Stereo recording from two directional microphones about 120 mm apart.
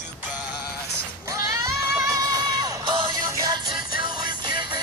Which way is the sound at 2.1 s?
30° right (ahead or behind).